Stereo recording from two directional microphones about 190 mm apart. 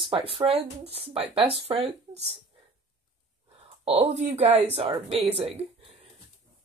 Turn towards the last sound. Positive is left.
turn(degrees=-30)  # may be behind; listen again after turning